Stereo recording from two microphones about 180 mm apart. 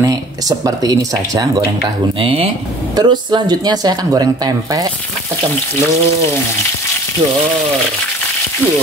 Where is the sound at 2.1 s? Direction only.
30° right (ahead or behind).